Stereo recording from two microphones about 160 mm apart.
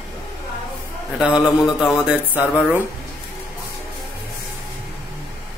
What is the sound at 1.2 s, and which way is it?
A man's voice, 5° right (ahead or behind).